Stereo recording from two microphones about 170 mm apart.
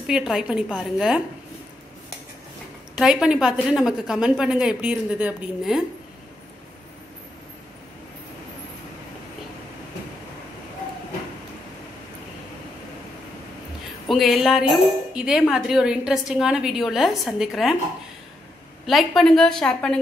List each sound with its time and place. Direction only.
0.0 s a woman's voice: 5° right (ahead or behind)
3.0 s a woman's voice: 5° right (ahead or behind)
14.0 s a woman's voice: centre (ahead or behind)
18.9 s a woman's voice: centre (ahead or behind)